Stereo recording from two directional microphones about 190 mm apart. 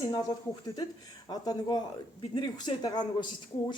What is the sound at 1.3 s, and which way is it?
Speech, 20° left (ahead or behind).